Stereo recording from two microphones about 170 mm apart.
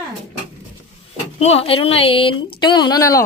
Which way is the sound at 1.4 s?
35° left (ahead or behind).